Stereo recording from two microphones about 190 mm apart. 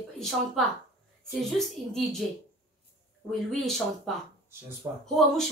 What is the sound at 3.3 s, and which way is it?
A woman's voice, centre (ahead or behind).